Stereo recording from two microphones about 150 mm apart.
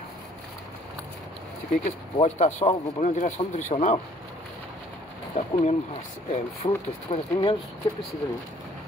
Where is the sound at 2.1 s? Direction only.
45° left (ahead or behind).